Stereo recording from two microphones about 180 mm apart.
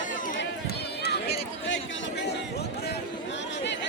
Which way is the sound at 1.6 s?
80° left.